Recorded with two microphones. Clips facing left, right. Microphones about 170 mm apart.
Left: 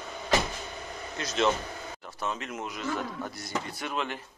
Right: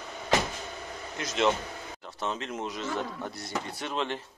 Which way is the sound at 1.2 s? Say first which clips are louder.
Even; 20° right (ahead or behind).